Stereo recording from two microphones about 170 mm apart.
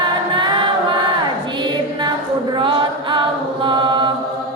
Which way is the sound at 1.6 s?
25° right (ahead or behind).